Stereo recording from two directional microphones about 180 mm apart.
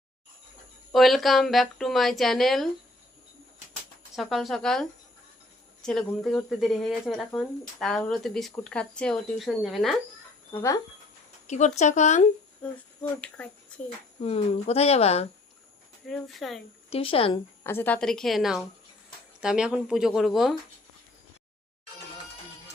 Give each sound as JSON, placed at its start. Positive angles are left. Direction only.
{"t": 0.9, "sound": "speech", "side_deg": 0}
{"t": 4.1, "sound": "speech", "side_deg": 0}
{"t": 10.5, "sound": "speech", "side_deg": 15}
{"t": 11.4, "sound": "speech", "side_deg": 40}
{"t": 12.6, "sound": "speech", "side_deg": 10}
{"t": 14.2, "sound": "speech", "side_deg": 30}
{"t": 16.0, "sound": "speech", "side_deg": 0}
{"t": 16.9, "sound": "speech", "side_deg": 30}
{"t": 17.6, "sound": "speech", "side_deg": 10}